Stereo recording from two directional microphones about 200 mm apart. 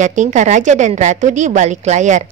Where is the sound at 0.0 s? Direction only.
35° right (ahead or behind).